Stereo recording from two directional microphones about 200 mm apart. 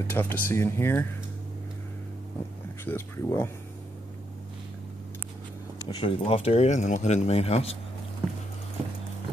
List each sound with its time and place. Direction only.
0.0 s speech: 10° left (ahead or behind)
2.8 s speech: 10° left (ahead or behind)
5.9 s speech: 25° left (ahead or behind)